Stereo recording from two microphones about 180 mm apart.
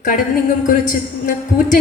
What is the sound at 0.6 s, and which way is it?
A woman's voice, 50° left (ahead or behind).